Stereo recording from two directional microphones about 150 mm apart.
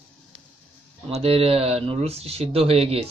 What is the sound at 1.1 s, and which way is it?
Speech, 40° right (ahead or behind).